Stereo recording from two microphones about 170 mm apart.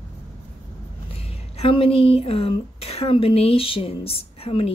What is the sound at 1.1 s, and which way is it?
Speech, 35° left (ahead or behind).